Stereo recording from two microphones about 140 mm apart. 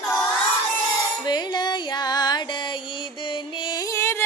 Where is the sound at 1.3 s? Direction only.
30° left (ahead or behind).